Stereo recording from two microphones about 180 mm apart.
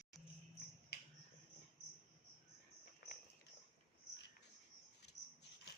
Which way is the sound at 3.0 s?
65° left (ahead or behind).